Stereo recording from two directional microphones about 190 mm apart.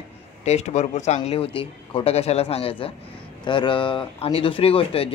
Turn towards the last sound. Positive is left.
turn(degrees=30)  # may be behind; listen again after turning